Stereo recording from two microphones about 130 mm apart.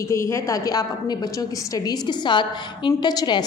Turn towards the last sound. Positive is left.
turn(degrees=30)  # may be behind; listen again after turning